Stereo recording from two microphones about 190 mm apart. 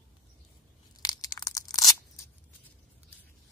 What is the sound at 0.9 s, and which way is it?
Tearing, 20° left (ahead or behind).